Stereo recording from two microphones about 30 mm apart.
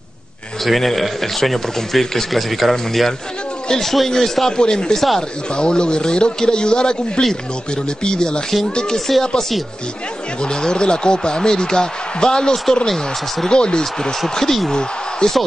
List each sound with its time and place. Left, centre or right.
0.7 s speech: centre
4.6 s speech: left
4.9 s speech: centre
5.6 s speech: left
8.9 s speech: centre
10.4 s speech: left
12.8 s speech: centre
13.5 s speech: left
14.3 s speech: centre